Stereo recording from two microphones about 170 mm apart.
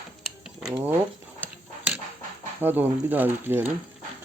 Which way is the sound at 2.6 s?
10° right (ahead or behind).